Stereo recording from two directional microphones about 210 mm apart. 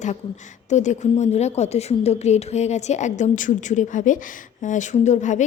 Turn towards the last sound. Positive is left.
turn(degrees=35)  # may be behind; listen again after turning